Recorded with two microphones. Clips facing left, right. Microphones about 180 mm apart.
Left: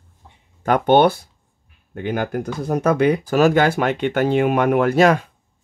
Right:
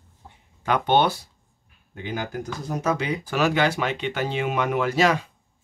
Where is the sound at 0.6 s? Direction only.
50° left (ahead or behind).